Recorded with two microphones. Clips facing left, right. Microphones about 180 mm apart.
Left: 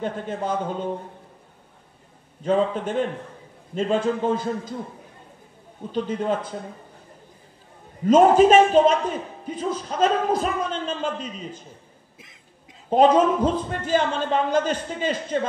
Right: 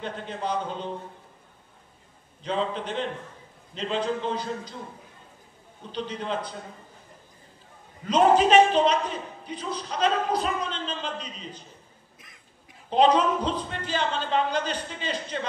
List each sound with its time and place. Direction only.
0.0 s a woman's voice: 45° left (ahead or behind)
2.4 s a woman's voice: 45° left (ahead or behind)
5.9 s a woman's voice: 45° left (ahead or behind)
8.1 s a woman's voice: 45° left (ahead or behind)
12.9 s a woman's voice: 45° left (ahead or behind)